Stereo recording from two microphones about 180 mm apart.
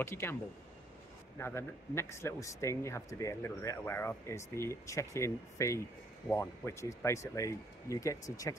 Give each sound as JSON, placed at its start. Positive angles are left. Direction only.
{"t": 0.0, "sound": "speech", "side_deg": 15}
{"t": 1.4, "sound": "speech", "side_deg": 15}